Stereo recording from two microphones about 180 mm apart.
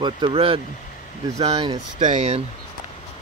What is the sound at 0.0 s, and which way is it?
Speech, 25° right (ahead or behind).